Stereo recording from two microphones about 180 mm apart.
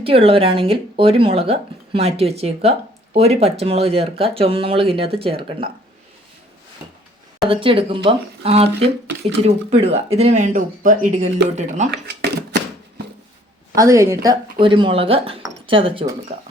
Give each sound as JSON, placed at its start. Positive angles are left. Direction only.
{"t": 0.0, "sound": "speech", "side_deg": -30}
{"t": 7.4, "sound": "speech", "side_deg": -30}
{"t": 11.9, "sound": "a sound", "side_deg": -65}
{"t": 13.7, "sound": "a woman's voice", "side_deg": -15}